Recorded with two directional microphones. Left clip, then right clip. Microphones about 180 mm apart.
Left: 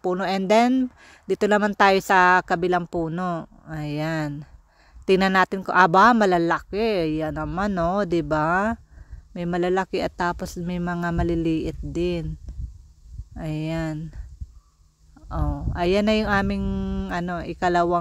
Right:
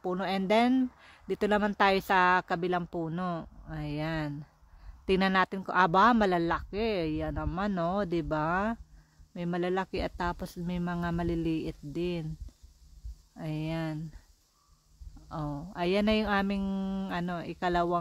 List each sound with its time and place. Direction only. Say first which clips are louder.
0.0 s speech: left 8 dB; 35° left (ahead or behind)
13.4 s speech: left 7 dB; 35° left (ahead or behind)
15.2 s speech: left 7 dB; 30° left (ahead or behind)